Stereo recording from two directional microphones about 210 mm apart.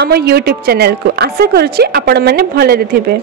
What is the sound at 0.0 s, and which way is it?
A woman's voice, 50° right (ahead or behind).